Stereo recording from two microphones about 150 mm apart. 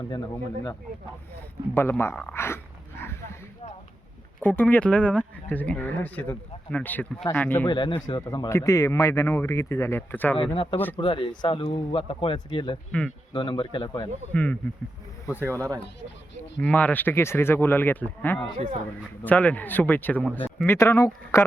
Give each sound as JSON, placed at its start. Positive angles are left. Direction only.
{"t": 0.0, "sound": "speech", "side_deg": 25}
{"t": 4.4, "sound": "speech", "side_deg": 10}
{"t": 7.7, "sound": "speech", "side_deg": 30}
{"t": 8.2, "sound": "speech", "side_deg": 20}
{"t": 10.3, "sound": "speech", "side_deg": 40}
{"t": 12.9, "sound": "speech", "side_deg": 5}
{"t": 13.3, "sound": "speech", "side_deg": 35}
{"t": 14.3, "sound": "speech", "side_deg": 10}
{"t": 15.3, "sound": "speech", "side_deg": -15}
{"t": 16.6, "sound": "speech", "side_deg": 10}